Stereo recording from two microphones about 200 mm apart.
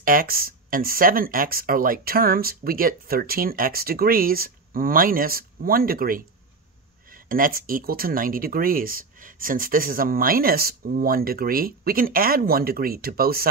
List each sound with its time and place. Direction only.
0.0 s speech: 45° right (ahead or behind)
7.2 s speech: 45° right (ahead or behind)